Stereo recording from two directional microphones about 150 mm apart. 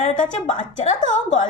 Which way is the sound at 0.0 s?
55° left (ahead or behind).